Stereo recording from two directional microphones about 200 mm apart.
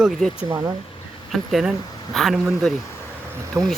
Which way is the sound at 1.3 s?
Centre (ahead or behind).